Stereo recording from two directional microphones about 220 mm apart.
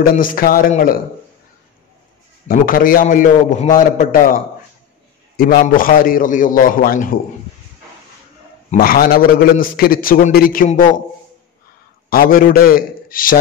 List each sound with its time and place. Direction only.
0.0 s a man's voice: 40° left (ahead or behind)
2.4 s a man's voice: 40° left (ahead or behind)
5.4 s a man's voice: 40° left (ahead or behind)
8.6 s a man's voice: 40° left (ahead or behind)
12.1 s a man's voice: 40° left (ahead or behind)